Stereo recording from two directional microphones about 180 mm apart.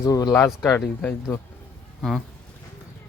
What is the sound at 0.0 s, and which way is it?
Speech, 20° left (ahead or behind).